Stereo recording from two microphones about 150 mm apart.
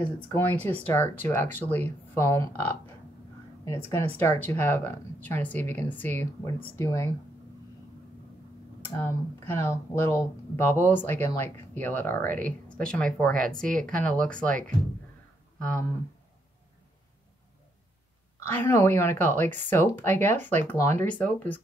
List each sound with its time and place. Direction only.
0.3 s speech: 15° left (ahead or behind)
8.9 s speech: 15° left (ahead or behind)
18.5 s speech: 15° left (ahead or behind)